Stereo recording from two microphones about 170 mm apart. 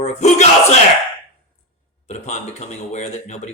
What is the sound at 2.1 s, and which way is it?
Speech, 40° left (ahead or behind).